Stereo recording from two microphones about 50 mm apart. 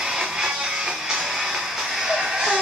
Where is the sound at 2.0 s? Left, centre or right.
Centre.